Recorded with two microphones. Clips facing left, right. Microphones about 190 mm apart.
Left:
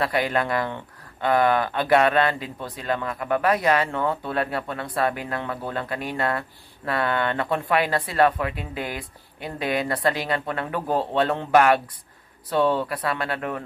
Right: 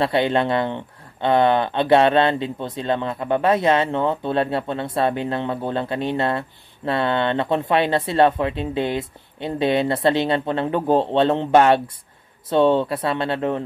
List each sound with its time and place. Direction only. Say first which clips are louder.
0.0 s speech: right 5 dB; 25° right (ahead or behind)